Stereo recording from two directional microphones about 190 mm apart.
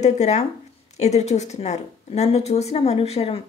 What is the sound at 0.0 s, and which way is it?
Speech, 35° left (ahead or behind).